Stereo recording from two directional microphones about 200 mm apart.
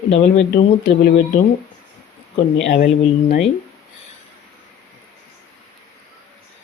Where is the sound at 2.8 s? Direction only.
40° left (ahead or behind).